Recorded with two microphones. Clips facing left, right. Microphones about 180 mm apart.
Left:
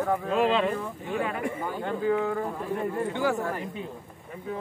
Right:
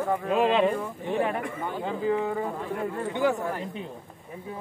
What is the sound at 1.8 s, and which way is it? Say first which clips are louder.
Speech: left 1 dB; 5° right (ahead or behind).